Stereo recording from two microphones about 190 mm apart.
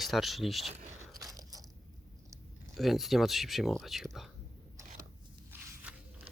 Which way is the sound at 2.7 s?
Centre (ahead or behind).